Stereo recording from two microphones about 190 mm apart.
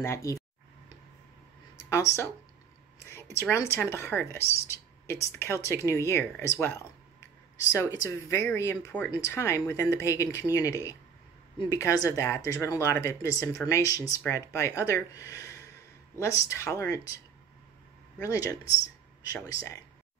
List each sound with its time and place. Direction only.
0.0 s speech: 15° left (ahead or behind)
1.9 s speech: 15° left (ahead or behind)
18.2 s speech: 15° left (ahead or behind)